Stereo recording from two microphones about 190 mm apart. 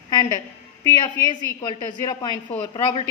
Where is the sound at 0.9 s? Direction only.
20° left (ahead or behind).